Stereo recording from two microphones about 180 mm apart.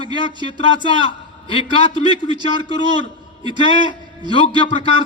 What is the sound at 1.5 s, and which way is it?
A man's voice, 30° left (ahead or behind).